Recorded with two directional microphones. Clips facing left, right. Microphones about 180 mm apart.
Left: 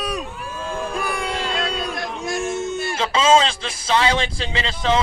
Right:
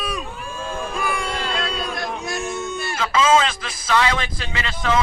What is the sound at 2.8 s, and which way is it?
Speech, 25° left (ahead or behind).